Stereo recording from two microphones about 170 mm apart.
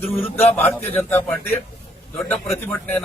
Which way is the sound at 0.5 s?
10° left (ahead or behind).